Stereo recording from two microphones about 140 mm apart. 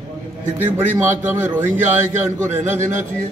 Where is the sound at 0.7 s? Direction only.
15° right (ahead or behind).